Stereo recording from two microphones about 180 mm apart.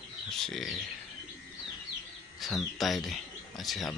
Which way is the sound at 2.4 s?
Centre (ahead or behind).